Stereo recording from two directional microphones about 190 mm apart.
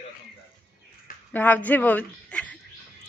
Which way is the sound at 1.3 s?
10° left (ahead or behind).